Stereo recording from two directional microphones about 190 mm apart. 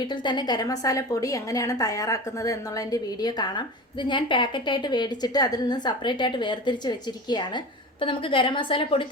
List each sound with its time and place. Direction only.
0.0 s a woman's voice: 25° left (ahead or behind)